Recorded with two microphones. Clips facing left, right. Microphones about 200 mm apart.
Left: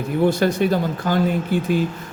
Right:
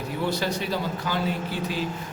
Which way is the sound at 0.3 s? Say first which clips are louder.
Left 9 dB; 50° left (ahead or behind).